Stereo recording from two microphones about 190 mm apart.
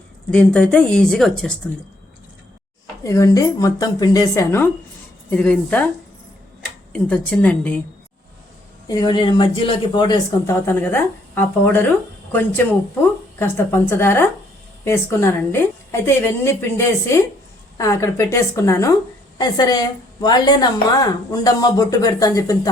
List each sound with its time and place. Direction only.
0.3 s speech: 5° left (ahead or behind)
3.0 s a woman's voice: 15° left (ahead or behind)
6.9 s a woman's voice: 5° left (ahead or behind)
8.9 s a woman's voice: 20° left (ahead or behind)
13.4 s a woman's voice: 10° left (ahead or behind)